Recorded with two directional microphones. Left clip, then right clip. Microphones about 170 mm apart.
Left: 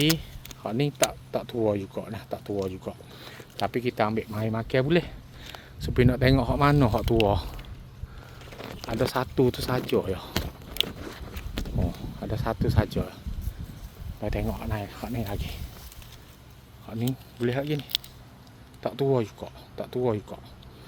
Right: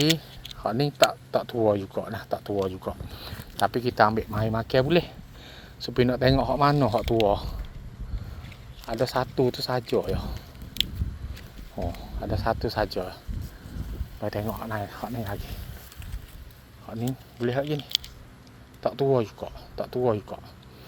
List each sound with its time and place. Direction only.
0.6 s speech: 10° left (ahead or behind); by 7.5 s 35° left (ahead or behind)
8.9 s speech: 35° left (ahead or behind)
12.2 s speech: 20° left (ahead or behind)
14.2 s speech: 25° left (ahead or behind)
16.8 s speech: 20° left (ahead or behind)
18.8 s speech: 15° left (ahead or behind)